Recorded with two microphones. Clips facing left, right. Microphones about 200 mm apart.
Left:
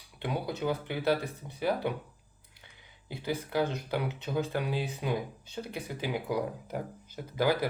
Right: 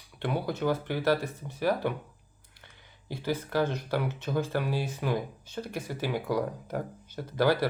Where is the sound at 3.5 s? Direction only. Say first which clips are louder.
Right 1 dB; 15° left (ahead or behind).